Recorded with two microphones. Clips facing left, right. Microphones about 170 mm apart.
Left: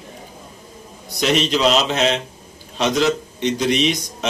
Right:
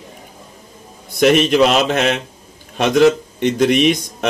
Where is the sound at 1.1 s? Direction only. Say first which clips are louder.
Right 6 dB; 55° right (ahead or behind).